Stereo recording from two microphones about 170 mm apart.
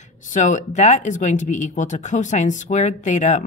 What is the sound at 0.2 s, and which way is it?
A woman's voice, 45° left (ahead or behind).